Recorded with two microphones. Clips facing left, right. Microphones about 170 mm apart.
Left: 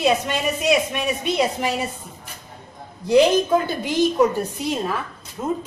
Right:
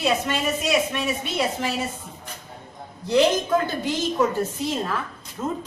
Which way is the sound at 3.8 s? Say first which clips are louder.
Left 5 dB; 15° left (ahead or behind).